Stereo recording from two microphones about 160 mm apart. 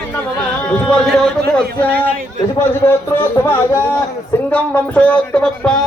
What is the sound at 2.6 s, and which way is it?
Speech, 15° left (ahead or behind).